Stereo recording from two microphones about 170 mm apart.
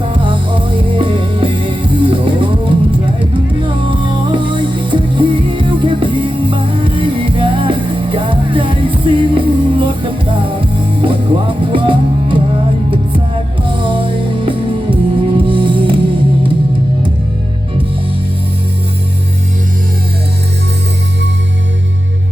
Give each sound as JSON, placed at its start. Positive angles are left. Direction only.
{"t": 0.1, "sound": "music", "side_deg": -30}
{"t": 13.7, "sound": "music", "side_deg": -30}